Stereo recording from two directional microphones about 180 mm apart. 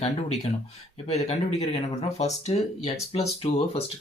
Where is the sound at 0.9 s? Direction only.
35° left (ahead or behind).